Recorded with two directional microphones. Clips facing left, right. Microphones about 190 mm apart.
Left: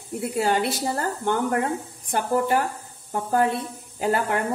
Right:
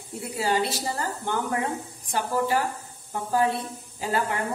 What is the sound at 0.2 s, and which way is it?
A woman's voice, 60° left (ahead or behind).